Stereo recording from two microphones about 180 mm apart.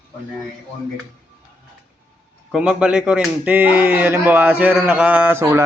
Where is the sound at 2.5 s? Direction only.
5° right (ahead or behind).